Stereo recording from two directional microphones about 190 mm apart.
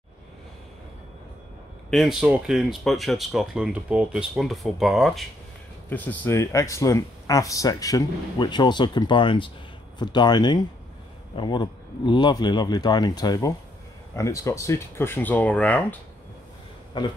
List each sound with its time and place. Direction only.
1.9 s speech: centre (ahead or behind)
17.0 s speech: 25° left (ahead or behind)